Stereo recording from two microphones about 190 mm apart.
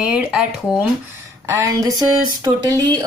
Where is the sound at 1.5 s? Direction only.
15° right (ahead or behind).